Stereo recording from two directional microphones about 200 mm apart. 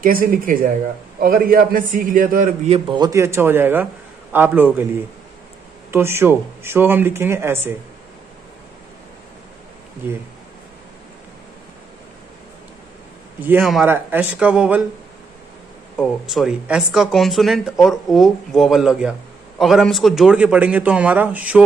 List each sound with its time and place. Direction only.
0.0 s a man's voice: 45° right (ahead or behind)
3.0 s a man's voice: 15° right (ahead or behind)
5.9 s a man's voice: 10° right (ahead or behind)
13.4 s a man's voice: 10° right (ahead or behind)
16.0 s a man's voice: centre (ahead or behind)